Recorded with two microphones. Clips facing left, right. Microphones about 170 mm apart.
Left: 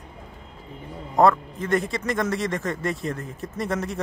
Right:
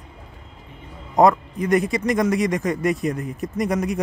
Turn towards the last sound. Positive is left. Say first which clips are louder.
# right 5 dB
turn(degrees=-15)  # may be behind; listen again after turning